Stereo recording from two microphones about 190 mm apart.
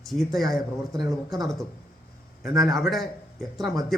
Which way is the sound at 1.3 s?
Centre (ahead or behind).